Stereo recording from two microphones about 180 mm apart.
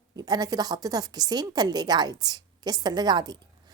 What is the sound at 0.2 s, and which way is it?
A woman's voice, 20° right (ahead or behind).